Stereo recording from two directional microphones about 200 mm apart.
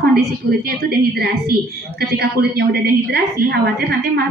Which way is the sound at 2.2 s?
55° right (ahead or behind).